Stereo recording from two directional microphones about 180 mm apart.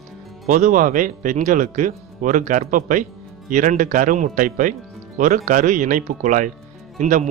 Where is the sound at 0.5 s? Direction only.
45° right (ahead or behind).